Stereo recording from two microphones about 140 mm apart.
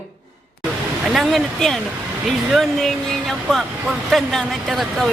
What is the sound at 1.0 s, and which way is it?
Speech, centre (ahead or behind).